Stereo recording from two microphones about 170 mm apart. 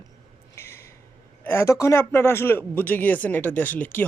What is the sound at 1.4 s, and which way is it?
Speech, 15° left (ahead or behind).